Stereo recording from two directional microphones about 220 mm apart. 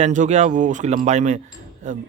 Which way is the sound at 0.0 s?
35° right (ahead or behind).